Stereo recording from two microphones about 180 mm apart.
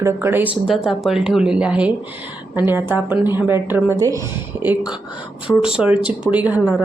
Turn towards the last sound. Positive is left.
turn(degrees=-10)  # may be behind; listen again after turning